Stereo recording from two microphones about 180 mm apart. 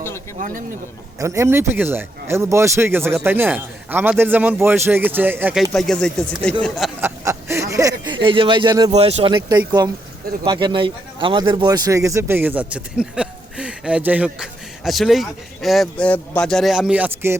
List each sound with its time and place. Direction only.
1.2 s speech: 15° right (ahead or behind)
5.7 s speech: 5° left (ahead or behind)
7.0 s a sound: 15° right (ahead or behind)
8.9 s speech: 35° right (ahead or behind); by 17.3 s 10° right (ahead or behind)